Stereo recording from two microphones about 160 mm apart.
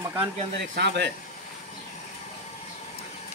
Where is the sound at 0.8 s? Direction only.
90° right.